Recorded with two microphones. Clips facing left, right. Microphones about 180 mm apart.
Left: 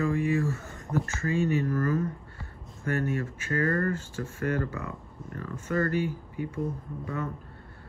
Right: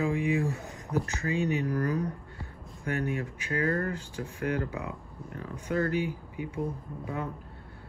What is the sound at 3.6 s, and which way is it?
Speech, 55° left (ahead or behind).